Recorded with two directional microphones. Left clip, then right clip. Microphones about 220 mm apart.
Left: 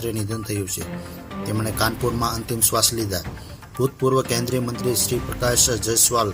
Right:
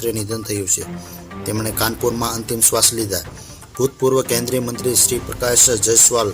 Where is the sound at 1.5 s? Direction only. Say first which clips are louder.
Right 2 dB; 20° left (ahead or behind).